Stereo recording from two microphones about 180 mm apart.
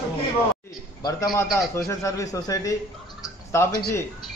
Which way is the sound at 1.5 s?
Centre (ahead or behind).